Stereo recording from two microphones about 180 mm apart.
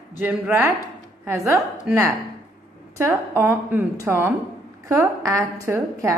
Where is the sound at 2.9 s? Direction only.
15° right (ahead or behind).